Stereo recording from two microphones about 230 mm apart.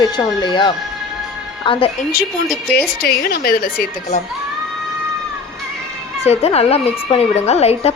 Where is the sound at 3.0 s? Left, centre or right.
Left.